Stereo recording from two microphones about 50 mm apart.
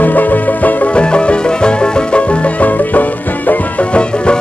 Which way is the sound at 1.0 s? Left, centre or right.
Left.